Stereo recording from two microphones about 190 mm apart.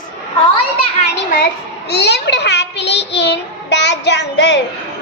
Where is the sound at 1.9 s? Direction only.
60° left (ahead or behind).